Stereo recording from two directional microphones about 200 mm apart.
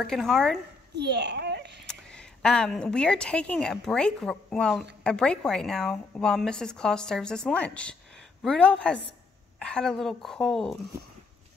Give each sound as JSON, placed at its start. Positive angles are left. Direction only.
{"t": 0.0, "sound": "a woman's voice", "side_deg": 0}
{"t": 0.9, "sound": "a sound", "side_deg": -55}
{"t": 1.9, "sound": "a woman's voice", "side_deg": 5}